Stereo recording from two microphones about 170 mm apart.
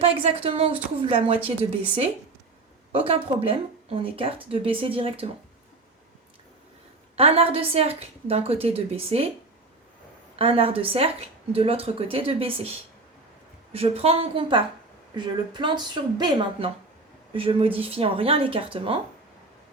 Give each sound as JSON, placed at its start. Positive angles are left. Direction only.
{"t": 0.0, "sound": "speech", "side_deg": -35}
{"t": 2.9, "sound": "speech", "side_deg": -35}
{"t": 7.2, "sound": "speech", "side_deg": -35}
{"t": 10.3, "sound": "speech", "side_deg": -35}
{"t": 13.7, "sound": "speech", "side_deg": -35}